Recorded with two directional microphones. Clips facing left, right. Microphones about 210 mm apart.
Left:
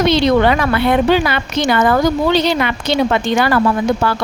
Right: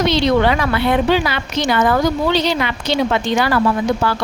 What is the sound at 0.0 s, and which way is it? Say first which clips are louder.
A woman's voice: left 2 dB; 55° left (ahead or behind).